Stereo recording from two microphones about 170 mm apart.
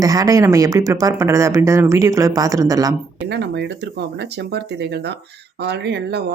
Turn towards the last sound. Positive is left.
turn(degrees=-80)